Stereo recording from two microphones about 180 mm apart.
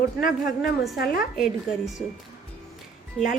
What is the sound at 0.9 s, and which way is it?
Speech, 60° left (ahead or behind).